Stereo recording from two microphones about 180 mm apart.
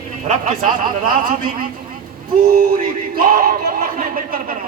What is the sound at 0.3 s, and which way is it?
A man's voice, 45° right (ahead or behind).